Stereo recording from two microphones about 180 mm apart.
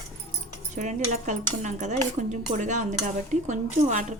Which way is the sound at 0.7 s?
45° right (ahead or behind).